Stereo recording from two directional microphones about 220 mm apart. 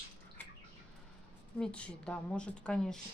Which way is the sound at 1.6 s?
5° left (ahead or behind).